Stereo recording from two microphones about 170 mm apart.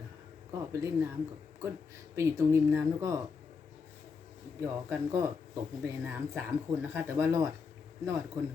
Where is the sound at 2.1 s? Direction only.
15° right (ahead or behind).